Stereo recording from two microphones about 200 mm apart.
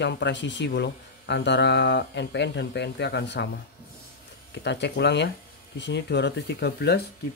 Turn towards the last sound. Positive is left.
turn(degrees=55)  # may be behind; listen again after turning